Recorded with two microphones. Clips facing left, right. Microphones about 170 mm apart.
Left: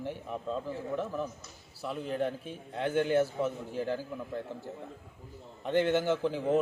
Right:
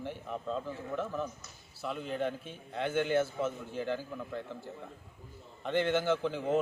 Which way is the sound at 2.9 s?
40° left (ahead or behind).